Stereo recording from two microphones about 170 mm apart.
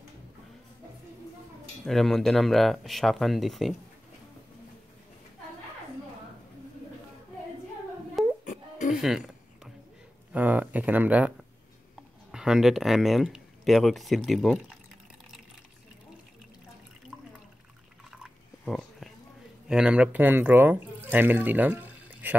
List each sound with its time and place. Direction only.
1.9 s speech: centre (ahead or behind)
8.5 s music: 50° left (ahead or behind)
8.9 s speech: centre (ahead or behind)
10.3 s speech: 10° right (ahead or behind)
18.1 s a sound: centre (ahead or behind)
19.7 s speech: 5° right (ahead or behind)